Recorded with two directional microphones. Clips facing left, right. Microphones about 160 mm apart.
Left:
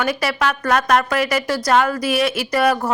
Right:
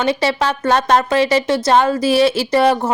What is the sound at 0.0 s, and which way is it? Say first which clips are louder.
Speech: right 3 dB; 25° right (ahead or behind).